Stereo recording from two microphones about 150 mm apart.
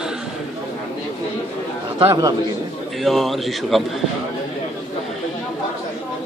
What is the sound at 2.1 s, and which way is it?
Speech, 25° right (ahead or behind).